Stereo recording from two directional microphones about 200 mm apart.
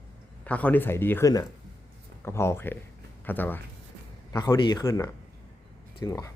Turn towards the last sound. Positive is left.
turn(degrees=15)  # may be behind; listen again after turning